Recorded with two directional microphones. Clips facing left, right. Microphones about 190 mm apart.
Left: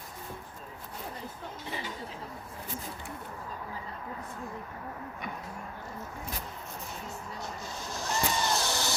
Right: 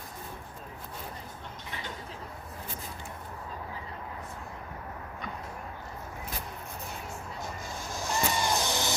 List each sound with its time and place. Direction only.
8.1 s vehicle: 15° right (ahead or behind)